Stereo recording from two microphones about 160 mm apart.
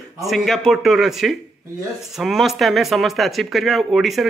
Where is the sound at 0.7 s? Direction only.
Centre (ahead or behind).